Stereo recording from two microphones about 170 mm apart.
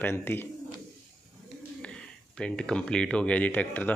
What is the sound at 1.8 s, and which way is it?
Speech, 5° left (ahead or behind).